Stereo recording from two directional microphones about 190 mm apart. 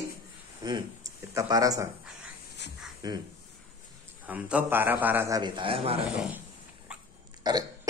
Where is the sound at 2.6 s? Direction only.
65° left (ahead or behind).